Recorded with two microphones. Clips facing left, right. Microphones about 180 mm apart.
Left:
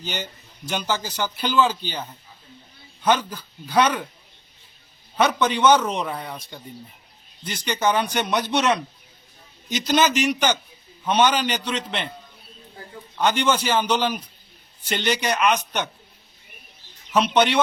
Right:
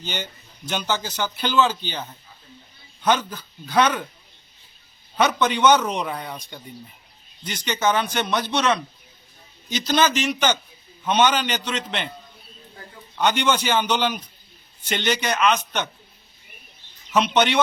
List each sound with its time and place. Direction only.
0.0 s a man's voice: 5° left (ahead or behind)
5.1 s a man's voice: 5° left (ahead or behind)
13.1 s a man's voice: 5° left (ahead or behind)
17.1 s speech: 10° left (ahead or behind)